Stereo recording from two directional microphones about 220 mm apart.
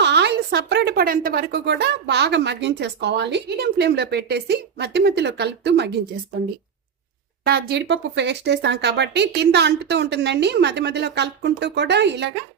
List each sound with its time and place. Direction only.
0.0 s a woman's voice: 50° right (ahead or behind)
7.4 s a woman's voice: 50° right (ahead or behind)